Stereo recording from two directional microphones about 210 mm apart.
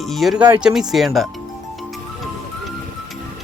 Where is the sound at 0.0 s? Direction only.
Centre (ahead or behind).